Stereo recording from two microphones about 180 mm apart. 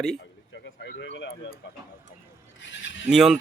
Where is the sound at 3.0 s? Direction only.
5° right (ahead or behind).